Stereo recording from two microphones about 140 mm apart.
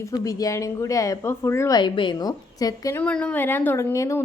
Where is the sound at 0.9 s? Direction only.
20° left (ahead or behind).